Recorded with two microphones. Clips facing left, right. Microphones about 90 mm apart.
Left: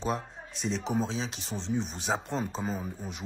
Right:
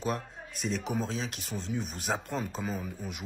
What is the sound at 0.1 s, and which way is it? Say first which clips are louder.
A man's voice: left 2 dB; 5° right (ahead or behind).